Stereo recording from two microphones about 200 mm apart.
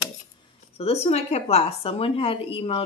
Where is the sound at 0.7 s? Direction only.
30° left (ahead or behind).